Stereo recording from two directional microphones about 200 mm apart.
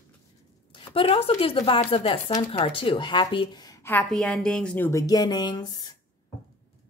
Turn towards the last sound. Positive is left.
turn(degrees=20)  # may be behind; listen again after turning